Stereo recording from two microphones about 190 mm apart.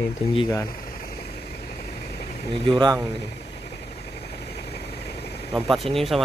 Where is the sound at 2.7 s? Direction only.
25° right (ahead or behind).